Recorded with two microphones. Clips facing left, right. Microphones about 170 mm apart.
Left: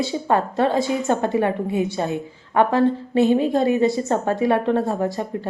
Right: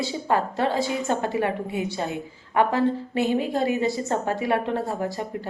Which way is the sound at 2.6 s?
25° left (ahead or behind).